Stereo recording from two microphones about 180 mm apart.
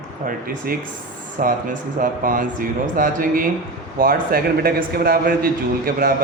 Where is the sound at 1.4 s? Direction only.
50° right (ahead or behind).